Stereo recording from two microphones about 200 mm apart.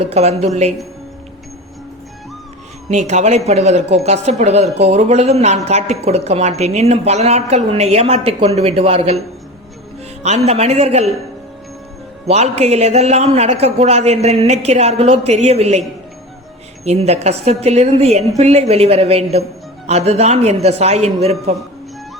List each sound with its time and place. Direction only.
0.1 s speech: 30° right (ahead or behind)
2.9 s speech: 35° right (ahead or behind)
10.2 s speech: 35° right (ahead or behind)
12.3 s speech: 35° right (ahead or behind)
16.8 s speech: 30° right (ahead or behind)